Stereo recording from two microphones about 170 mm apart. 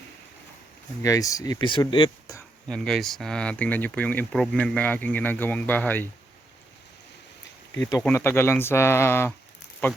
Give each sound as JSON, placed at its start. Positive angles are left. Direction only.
{"t": 1.0, "sound": "speech", "side_deg": 20}
{"t": 2.6, "sound": "speech", "side_deg": 5}
{"t": 8.0, "sound": "speech", "side_deg": 15}